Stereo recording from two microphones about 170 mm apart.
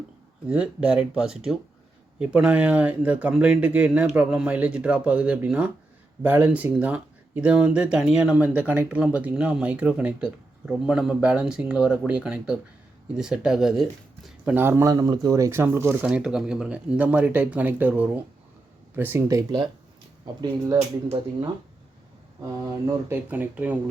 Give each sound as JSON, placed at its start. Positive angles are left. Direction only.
{"t": 0.4, "sound": "speech", "side_deg": -5}
{"t": 23.0, "sound": "speech", "side_deg": -10}